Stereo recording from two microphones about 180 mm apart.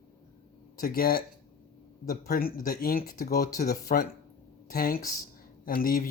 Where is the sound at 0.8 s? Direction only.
55° left (ahead or behind).